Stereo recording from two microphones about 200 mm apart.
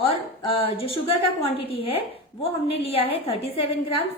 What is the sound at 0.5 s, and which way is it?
A woman's voice, 25° left (ahead or behind).